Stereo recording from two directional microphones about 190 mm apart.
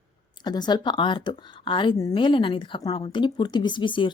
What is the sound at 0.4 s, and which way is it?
Speech, 20° left (ahead or behind).